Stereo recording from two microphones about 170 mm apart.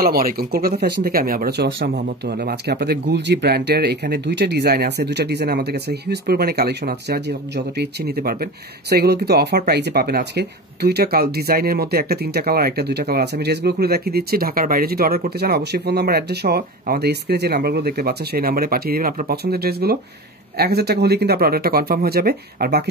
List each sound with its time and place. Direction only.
0.0 s speech: 60° right (ahead or behind)